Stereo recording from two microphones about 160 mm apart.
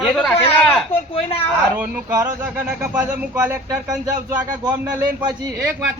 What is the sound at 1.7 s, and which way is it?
A man's voice, 10° right (ahead or behind).